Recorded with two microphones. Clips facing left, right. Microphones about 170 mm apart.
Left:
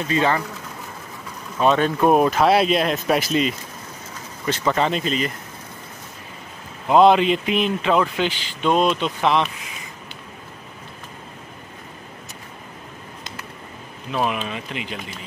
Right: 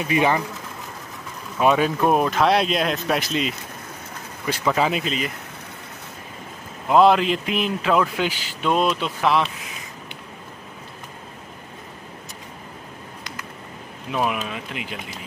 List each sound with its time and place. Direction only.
0.0 s speech: 15° right (ahead or behind)
1.6 s speech: 10° right (ahead or behind)
2.0 s speech: centre (ahead or behind)
6.9 s speech: centre (ahead or behind)
14.1 s speech: 5° right (ahead or behind)